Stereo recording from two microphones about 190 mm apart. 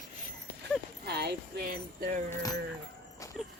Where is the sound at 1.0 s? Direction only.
60° right (ahead or behind).